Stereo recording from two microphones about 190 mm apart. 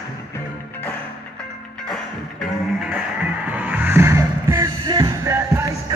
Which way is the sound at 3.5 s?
10° right (ahead or behind).